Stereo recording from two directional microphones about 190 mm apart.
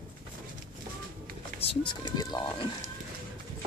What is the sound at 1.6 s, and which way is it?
Speech, 25° left (ahead or behind).